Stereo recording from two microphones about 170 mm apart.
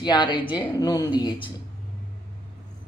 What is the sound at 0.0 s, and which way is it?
Speech, 25° left (ahead or behind).